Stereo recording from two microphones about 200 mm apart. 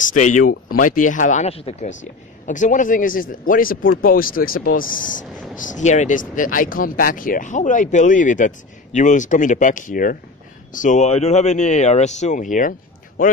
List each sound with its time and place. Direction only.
0.1 s speech: 40° left (ahead or behind)